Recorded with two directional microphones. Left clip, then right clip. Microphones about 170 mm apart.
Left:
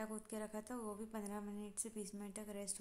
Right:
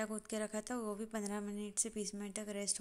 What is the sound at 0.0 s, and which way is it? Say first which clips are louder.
A woman's voice: right 6 dB; 20° right (ahead or behind).